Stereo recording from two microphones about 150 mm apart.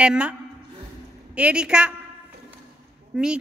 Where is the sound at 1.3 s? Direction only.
5° right (ahead or behind).